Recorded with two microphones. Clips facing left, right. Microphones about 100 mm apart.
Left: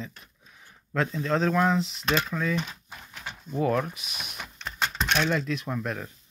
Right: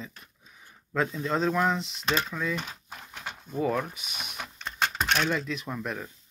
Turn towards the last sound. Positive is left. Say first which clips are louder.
# left 2 dB
turn(degrees=-5)  # may be behind; listen again after turning